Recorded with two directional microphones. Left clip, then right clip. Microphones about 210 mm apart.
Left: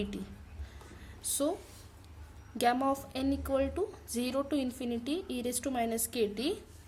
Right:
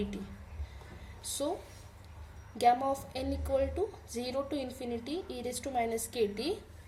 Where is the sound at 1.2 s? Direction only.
30° left (ahead or behind).